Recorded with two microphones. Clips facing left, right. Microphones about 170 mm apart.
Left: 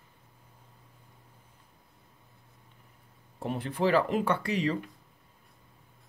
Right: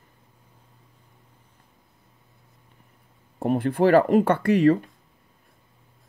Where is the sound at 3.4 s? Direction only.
50° right (ahead or behind).